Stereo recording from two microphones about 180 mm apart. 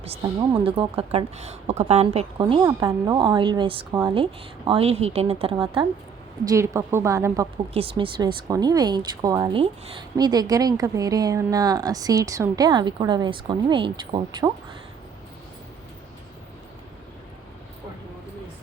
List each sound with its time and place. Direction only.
0.6 s a woman's voice: 30° right (ahead or behind)
2.4 s a woman's voice: 25° right (ahead or behind)
6.4 s a woman's voice: 15° right (ahead or behind)
7.7 s a woman's voice: 30° right (ahead or behind)